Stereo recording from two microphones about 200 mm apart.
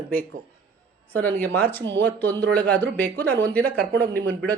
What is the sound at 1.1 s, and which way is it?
Speech, 10° left (ahead or behind).